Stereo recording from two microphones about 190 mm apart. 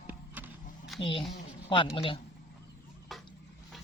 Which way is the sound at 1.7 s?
25° left (ahead or behind).